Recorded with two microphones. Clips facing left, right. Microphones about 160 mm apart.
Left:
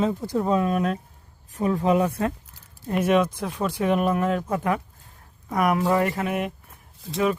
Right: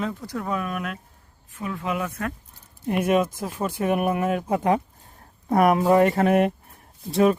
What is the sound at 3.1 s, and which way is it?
Speech, 45° right (ahead or behind).